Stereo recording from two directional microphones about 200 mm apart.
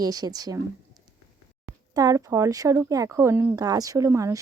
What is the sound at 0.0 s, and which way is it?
Speech, 20° right (ahead or behind).